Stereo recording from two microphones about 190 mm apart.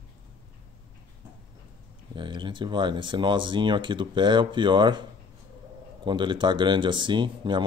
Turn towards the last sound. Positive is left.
turn(degrees=-25)  # may be behind; listen again after turning